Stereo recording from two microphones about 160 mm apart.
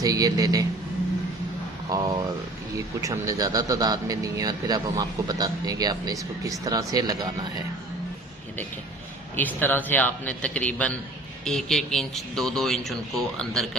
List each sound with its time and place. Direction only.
0.0 s a man's voice: 25° right (ahead or behind)
1.9 s a man's voice: 20° right (ahead or behind)
9.3 s a man's voice: 10° left (ahead or behind)